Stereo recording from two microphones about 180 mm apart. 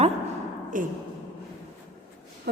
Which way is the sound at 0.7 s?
50° right (ahead or behind).